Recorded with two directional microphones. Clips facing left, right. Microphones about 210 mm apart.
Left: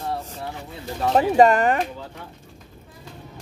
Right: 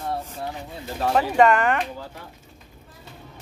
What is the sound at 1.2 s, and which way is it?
Speech, 35° left (ahead or behind).